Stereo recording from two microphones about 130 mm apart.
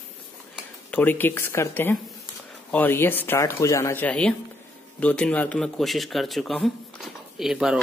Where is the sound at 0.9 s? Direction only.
15° left (ahead or behind).